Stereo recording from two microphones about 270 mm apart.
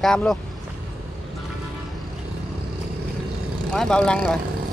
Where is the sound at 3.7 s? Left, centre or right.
Centre.